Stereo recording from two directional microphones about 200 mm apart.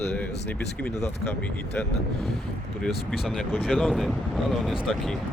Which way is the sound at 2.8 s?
Centre (ahead or behind).